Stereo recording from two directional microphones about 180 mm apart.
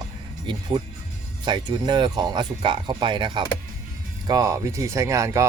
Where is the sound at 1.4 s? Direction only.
25° right (ahead or behind).